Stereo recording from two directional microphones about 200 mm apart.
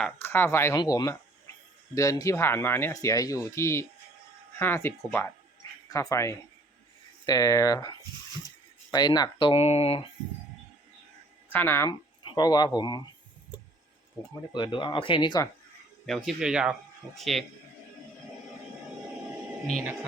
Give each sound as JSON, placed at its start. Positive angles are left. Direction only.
{"t": 0.0, "sound": "speech", "side_deg": 10}
{"t": 11.5, "sound": "speech", "side_deg": 10}
{"t": 14.5, "sound": "speech", "side_deg": 25}
{"t": 16.0, "sound": "speech", "side_deg": 0}
{"t": 19.6, "sound": "speech", "side_deg": 0}